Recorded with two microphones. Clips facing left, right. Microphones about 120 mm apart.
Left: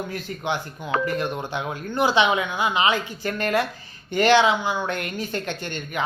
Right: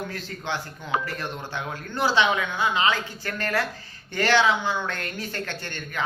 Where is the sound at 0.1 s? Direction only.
15° left (ahead or behind).